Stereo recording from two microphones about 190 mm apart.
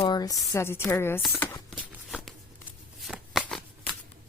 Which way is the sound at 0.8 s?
10° left (ahead or behind).